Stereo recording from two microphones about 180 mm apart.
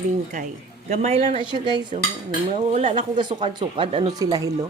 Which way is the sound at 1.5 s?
25° right (ahead or behind).